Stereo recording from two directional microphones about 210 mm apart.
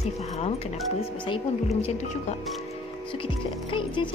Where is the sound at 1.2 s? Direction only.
25° left (ahead or behind).